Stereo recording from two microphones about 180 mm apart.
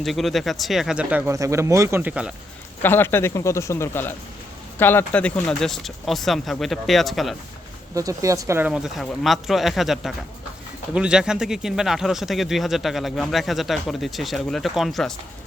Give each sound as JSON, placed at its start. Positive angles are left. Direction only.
{"t": 0.0, "sound": "speech", "side_deg": 0}
{"t": 1.3, "sound": "speech", "side_deg": -15}
{"t": 2.8, "sound": "speech", "side_deg": 10}
{"t": 7.9, "sound": "speech", "side_deg": -20}